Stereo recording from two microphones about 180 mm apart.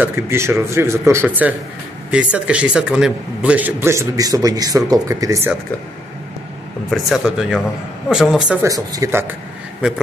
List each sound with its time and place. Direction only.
0.0 s a man's voice: 15° right (ahead or behind)
6.9 s speech: centre (ahead or behind)
8.6 s a man's voice: 20° right (ahead or behind)